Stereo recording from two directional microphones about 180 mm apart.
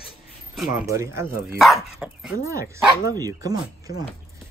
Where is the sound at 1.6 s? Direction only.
Centre (ahead or behind).